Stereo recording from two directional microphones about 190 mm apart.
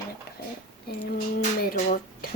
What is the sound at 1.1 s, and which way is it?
A woman's voice, 50° left (ahead or behind).